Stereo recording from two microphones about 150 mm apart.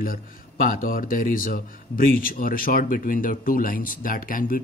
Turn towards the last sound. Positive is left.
turn(degrees=70)  # may be behind; listen again after turning